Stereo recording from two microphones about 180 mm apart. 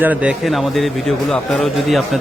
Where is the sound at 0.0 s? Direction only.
10° right (ahead or behind).